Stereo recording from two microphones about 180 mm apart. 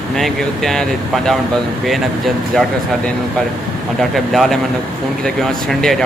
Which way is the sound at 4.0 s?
Centre (ahead or behind).